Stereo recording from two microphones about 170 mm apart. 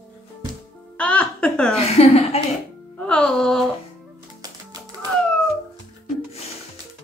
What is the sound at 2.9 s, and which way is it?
Speech, 5° left (ahead or behind).